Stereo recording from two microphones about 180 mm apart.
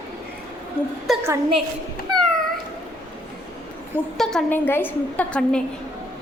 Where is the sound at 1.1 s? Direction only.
Centre (ahead or behind).